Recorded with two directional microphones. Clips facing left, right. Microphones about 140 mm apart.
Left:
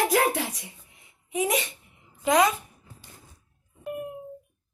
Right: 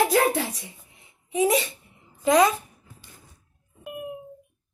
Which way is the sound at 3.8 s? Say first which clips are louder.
Left 2 dB; 10° right (ahead or behind).